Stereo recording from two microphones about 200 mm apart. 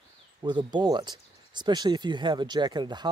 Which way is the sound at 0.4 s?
20° right (ahead or behind).